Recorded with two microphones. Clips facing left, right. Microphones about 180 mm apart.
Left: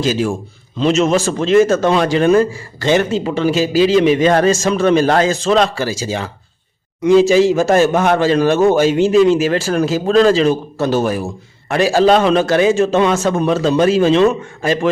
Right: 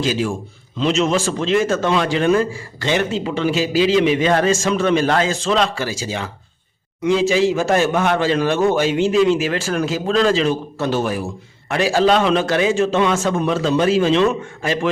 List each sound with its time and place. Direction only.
0.0 s a man's voice: 45° left (ahead or behind)